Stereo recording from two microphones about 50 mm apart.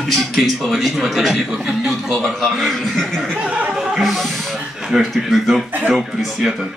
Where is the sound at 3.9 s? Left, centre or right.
Centre.